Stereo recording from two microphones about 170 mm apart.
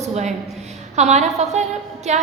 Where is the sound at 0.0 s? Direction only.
40° right (ahead or behind).